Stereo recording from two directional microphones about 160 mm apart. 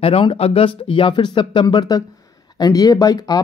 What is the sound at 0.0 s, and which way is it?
Speech, 35° left (ahead or behind).